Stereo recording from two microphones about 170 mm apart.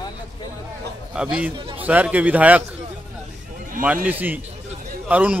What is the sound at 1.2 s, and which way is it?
A man's voice, 5° right (ahead or behind).